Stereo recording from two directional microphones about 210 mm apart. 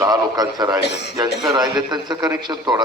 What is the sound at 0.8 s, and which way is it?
Speech, 55° left (ahead or behind).